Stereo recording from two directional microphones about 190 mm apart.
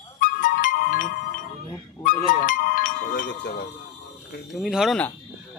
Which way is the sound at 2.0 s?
45° left (ahead or behind).